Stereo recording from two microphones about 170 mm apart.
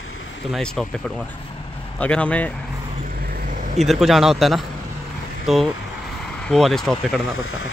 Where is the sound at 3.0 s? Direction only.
60° right (ahead or behind).